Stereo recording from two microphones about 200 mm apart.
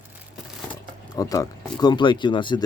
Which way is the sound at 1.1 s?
15° left (ahead or behind).